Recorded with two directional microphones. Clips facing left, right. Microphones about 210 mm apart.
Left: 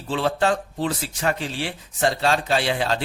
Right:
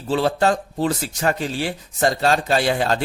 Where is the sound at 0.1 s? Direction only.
40° right (ahead or behind).